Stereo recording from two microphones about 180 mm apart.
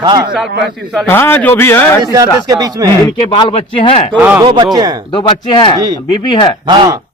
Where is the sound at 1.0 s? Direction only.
10° left (ahead or behind).